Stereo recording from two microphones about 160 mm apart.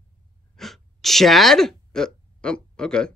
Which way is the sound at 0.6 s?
Centre (ahead or behind).